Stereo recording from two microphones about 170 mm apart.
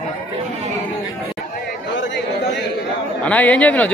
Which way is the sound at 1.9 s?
90° left.